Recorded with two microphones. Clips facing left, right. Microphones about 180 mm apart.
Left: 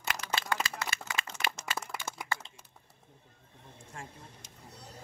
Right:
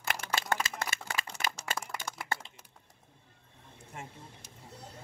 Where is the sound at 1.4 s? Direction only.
45° right (ahead or behind).